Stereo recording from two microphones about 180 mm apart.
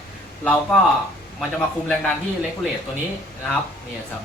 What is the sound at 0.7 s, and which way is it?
Speech, 5° left (ahead or behind).